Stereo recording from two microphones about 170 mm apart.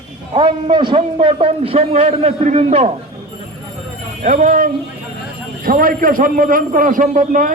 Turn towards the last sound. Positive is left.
turn(degrees=-50)  # may be behind; listen again after turning